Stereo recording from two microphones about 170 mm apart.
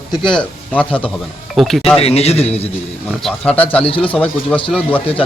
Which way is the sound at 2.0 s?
35° left (ahead or behind).